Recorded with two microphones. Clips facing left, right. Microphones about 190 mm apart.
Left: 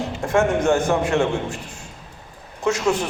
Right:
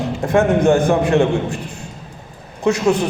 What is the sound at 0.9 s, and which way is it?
Speech, 15° right (ahead or behind).